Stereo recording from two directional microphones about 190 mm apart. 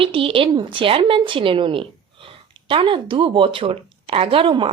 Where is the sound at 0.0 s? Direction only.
30° right (ahead or behind).